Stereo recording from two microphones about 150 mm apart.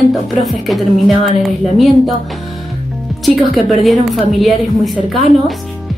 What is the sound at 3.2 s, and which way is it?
A woman's voice, centre (ahead or behind).